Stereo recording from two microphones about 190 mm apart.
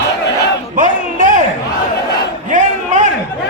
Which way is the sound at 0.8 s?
45° right (ahead or behind).